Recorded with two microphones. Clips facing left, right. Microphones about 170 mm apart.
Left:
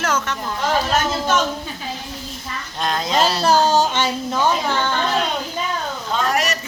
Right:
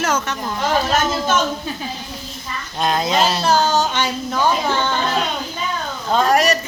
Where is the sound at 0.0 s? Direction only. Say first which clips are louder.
Right 1 dB; 10° right (ahead or behind).